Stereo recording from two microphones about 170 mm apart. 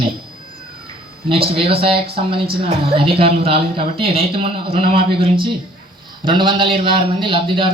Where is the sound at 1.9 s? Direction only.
65° right (ahead or behind).